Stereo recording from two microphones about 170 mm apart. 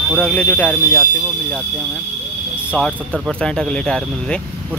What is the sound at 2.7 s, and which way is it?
Speech, 10° left (ahead or behind).